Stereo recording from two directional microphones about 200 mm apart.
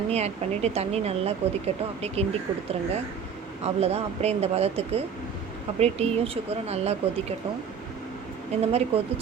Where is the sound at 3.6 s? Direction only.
30° right (ahead or behind).